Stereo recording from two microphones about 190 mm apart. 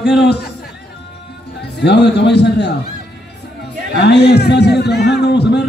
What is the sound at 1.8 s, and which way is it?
Speech, 65° left (ahead or behind).